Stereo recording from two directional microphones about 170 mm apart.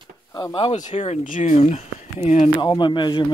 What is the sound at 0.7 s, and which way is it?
Speech, 45° left (ahead or behind).